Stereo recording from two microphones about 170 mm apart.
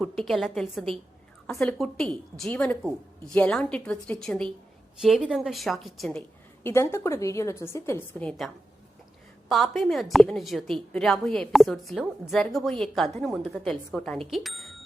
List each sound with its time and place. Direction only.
0.0 s a woman's voice: centre (ahead or behind)
6.6 s a woman's voice: 15° left (ahead or behind)
9.5 s a woman's voice: centre (ahead or behind)